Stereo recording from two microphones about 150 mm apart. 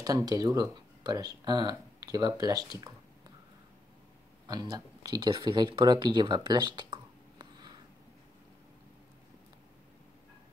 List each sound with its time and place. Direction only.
0.0 s speech: 25° right (ahead or behind)
4.5 s speech: 25° right (ahead or behind)